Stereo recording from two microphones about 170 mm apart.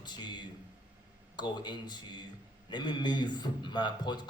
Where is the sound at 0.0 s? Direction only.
25° left (ahead or behind).